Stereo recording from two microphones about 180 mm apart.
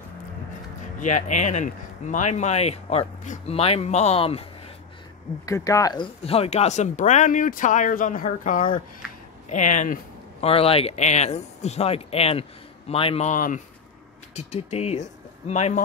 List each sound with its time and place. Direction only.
0.9 s speech: 40° left (ahead or behind)
5.4 s speech: 20° left (ahead or behind); by 9.9 s 45° left (ahead or behind)
10.4 s speech: 35° left (ahead or behind)